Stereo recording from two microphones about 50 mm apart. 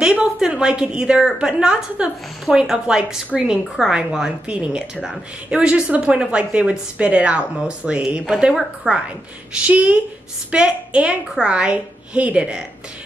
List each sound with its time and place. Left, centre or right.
0.0 s a woman's voice: centre
8.3 s a woman's voice: centre
8.8 s a woman's voice: right